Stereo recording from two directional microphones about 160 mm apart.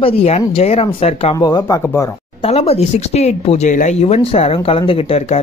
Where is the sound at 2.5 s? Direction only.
40° left (ahead or behind).